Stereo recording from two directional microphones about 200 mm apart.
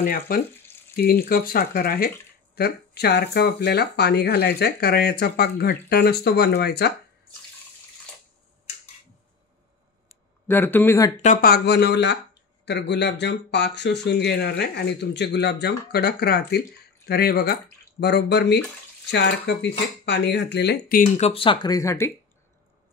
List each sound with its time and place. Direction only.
0.0 s speech: 45° left (ahead or behind)
10.5 s speech: 10° left (ahead or behind)
11.2 s speech: 50° left (ahead or behind)
21.3 s speech: 25° left (ahead or behind)